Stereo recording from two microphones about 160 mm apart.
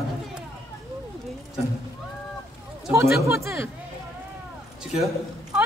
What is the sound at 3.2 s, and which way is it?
Speech, 15° right (ahead or behind).